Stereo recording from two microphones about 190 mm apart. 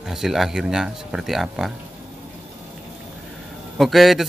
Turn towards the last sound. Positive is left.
turn(degrees=0)  # may be behind; listen again after turning